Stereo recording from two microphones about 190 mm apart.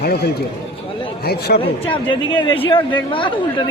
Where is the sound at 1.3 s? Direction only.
55° left (ahead or behind).